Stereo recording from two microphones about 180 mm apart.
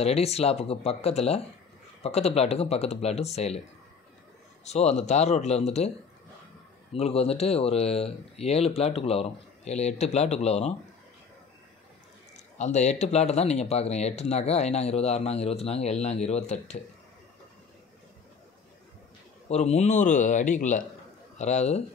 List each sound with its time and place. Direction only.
0.0 s speech: 35° left (ahead or behind)
4.6 s speech: 35° left (ahead or behind)
6.9 s speech: 35° left (ahead or behind)
12.5 s speech: 40° left (ahead or behind)
19.5 s speech: 40° left (ahead or behind)